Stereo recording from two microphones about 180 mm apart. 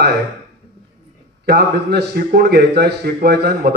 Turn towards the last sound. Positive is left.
turn(degrees=-60)  # may be behind; listen again after turning